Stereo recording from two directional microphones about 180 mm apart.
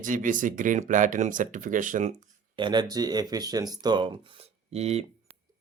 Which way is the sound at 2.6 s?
25° right (ahead or behind).